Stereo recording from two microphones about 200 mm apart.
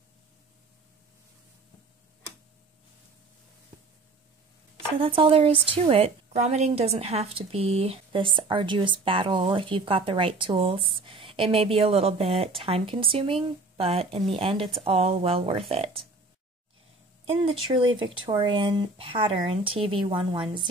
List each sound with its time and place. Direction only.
4.9 s a woman's voice: 25° right (ahead or behind)
17.3 s a woman's voice: 25° right (ahead or behind)